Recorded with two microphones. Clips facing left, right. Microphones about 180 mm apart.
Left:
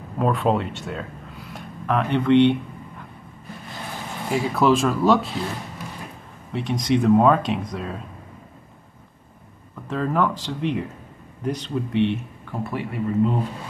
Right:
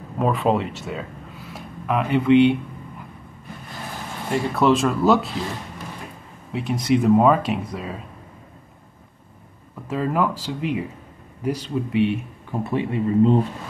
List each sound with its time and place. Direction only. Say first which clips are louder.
0.2 s speech: right 1 dB; centre (ahead or behind)
4.3 s speech: even; centre (ahead or behind)
6.5 s speech: right 1 dB; 5° right (ahead or behind)
9.8 s speech: even; 5° right (ahead or behind)
12.6 s speech: right 4 dB; 25° right (ahead or behind)